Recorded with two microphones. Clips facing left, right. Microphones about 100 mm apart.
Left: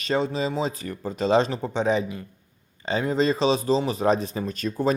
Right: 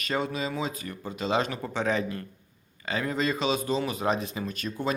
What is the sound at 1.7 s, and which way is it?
A man's voice, 20° left (ahead or behind).